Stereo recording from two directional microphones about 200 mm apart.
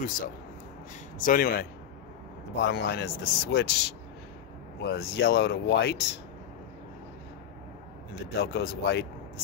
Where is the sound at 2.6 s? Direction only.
60° left (ahead or behind).